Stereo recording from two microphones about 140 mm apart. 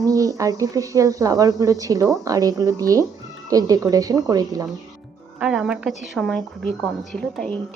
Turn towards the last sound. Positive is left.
turn(degrees=5)  # may be behind; listen again after turning